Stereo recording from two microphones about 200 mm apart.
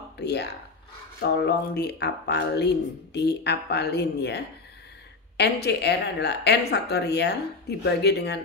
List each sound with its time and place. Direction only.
0.2 s speech: 55° left (ahead or behind)